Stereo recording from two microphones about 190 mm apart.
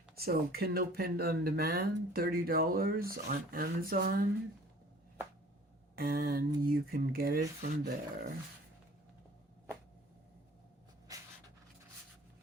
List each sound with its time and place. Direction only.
0.2 s speech: 55° right (ahead or behind)
6.0 s speech: 50° right (ahead or behind)
11.1 s a sound: 20° right (ahead or behind)